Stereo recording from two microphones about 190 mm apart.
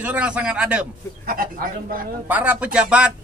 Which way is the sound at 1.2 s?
50° right (ahead or behind).